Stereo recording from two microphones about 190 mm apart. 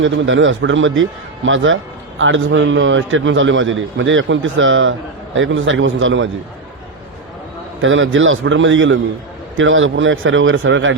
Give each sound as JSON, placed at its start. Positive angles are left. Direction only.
{"t": 0.0, "sound": "a man's voice", "side_deg": -85}
{"t": 7.8, "sound": "speech", "side_deg": -90}